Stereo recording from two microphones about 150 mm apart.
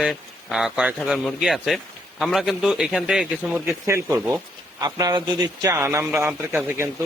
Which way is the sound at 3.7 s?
20° right (ahead or behind).